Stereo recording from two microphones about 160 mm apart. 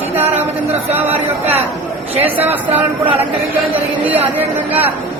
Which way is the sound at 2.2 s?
10° right (ahead or behind).